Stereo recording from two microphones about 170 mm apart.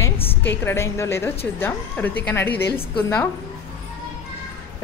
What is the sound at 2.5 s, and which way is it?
Speech, 70° left (ahead or behind).